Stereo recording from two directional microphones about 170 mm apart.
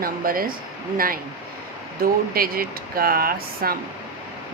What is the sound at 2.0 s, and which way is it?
Speech, 60° right (ahead or behind).